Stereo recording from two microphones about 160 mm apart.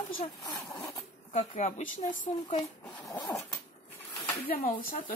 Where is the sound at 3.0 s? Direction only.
25° left (ahead or behind).